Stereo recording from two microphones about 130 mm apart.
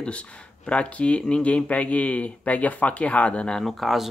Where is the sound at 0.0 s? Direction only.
10° left (ahead or behind).